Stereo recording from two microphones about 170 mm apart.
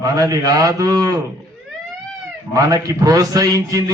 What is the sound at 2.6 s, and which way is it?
A man's voice, 20° right (ahead or behind).